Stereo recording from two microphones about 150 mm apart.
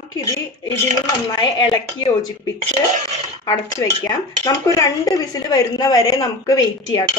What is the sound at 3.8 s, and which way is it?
A woman's voice, 20° left (ahead or behind).